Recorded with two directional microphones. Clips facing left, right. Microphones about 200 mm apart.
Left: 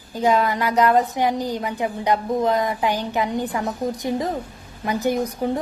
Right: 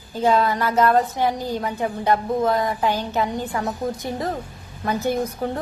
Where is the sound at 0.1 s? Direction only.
15° left (ahead or behind).